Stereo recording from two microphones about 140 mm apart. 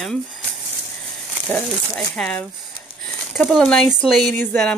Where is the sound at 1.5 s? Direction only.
10° left (ahead or behind).